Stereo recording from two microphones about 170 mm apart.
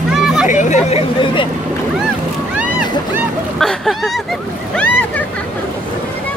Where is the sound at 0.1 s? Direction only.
Centre (ahead or behind).